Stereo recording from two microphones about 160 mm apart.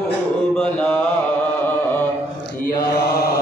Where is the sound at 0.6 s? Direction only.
10° left (ahead or behind).